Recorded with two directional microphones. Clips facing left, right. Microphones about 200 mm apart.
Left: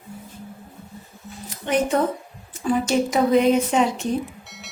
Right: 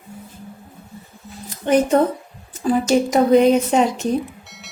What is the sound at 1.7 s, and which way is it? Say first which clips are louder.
A woman's voice: right 5 dB; 35° right (ahead or behind).